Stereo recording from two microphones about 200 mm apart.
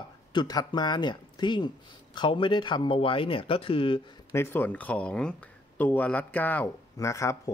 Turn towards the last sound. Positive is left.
turn(degrees=15)  # may be behind; listen again after turning